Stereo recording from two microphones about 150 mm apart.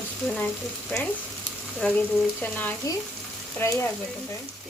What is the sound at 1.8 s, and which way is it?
Frying, 5° left (ahead or behind).